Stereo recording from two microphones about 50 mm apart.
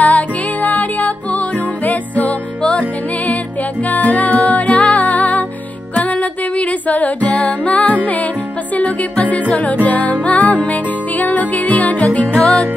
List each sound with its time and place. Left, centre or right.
0.0 s music: left
3.9 s music: left
6.9 s music: left